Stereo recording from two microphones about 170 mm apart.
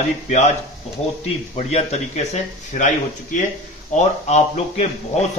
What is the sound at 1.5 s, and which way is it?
A man's voice, 40° left (ahead or behind).